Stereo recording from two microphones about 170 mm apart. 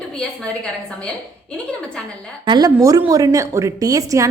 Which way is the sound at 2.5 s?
20° right (ahead or behind).